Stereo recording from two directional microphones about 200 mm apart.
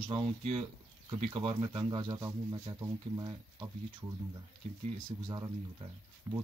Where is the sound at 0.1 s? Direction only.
30° right (ahead or behind).